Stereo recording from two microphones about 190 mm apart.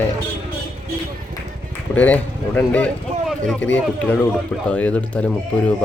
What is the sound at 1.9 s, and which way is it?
Speech, 10° left (ahead or behind).